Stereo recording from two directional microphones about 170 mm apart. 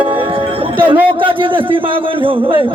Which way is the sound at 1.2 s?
30° right (ahead or behind).